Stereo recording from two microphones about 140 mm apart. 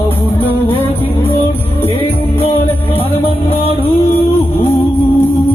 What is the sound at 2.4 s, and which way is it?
Music, 45° left (ahead or behind).